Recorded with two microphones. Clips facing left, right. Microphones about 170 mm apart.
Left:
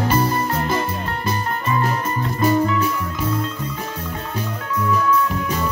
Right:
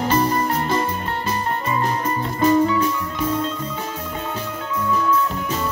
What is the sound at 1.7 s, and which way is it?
Music, 30° right (ahead or behind).